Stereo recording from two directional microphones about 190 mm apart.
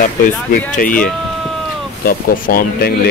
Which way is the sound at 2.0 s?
50° left (ahead or behind).